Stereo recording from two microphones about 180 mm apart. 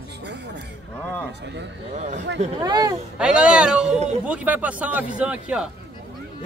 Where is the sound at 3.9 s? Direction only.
40° right (ahead or behind).